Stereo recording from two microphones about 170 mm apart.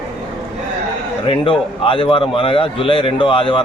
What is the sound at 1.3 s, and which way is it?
A man's voice, 30° left (ahead or behind).